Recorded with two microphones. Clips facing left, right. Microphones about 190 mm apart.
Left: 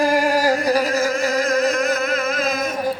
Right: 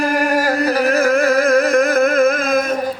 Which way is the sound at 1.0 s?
55° right (ahead or behind).